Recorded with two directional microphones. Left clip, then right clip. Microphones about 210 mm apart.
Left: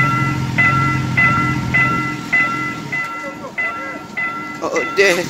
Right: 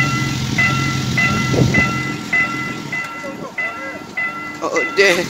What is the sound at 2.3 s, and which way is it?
Music, 35° left (ahead or behind).